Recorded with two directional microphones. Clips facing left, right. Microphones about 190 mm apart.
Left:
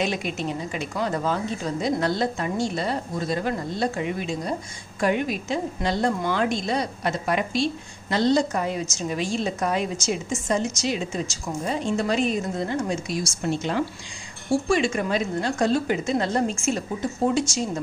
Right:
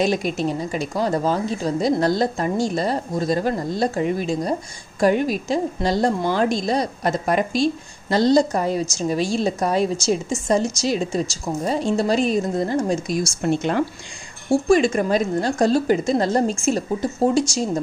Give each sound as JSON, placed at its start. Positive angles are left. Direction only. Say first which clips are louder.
{"t": 0.0, "sound": "a woman's voice", "louder": "right 6 dB", "side_deg": -40}
{"t": 13.4, "sound": "speech", "louder": "right 4 dB", "side_deg": -55}
{"t": 14.5, "sound": "a woman's voice", "louder": "right 5 dB", "side_deg": -45}